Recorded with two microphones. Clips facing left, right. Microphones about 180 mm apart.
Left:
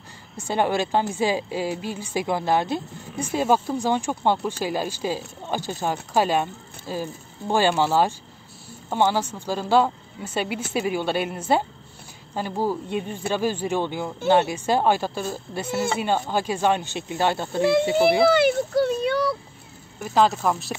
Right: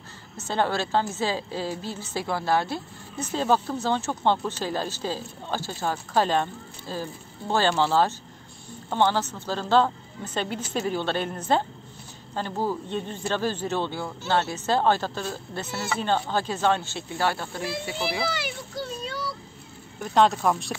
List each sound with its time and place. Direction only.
0.4 s a woman's voice: 15° left (ahead or behind)
18.2 s a child's voice: 55° left (ahead or behind)
20.0 s speech: centre (ahead or behind)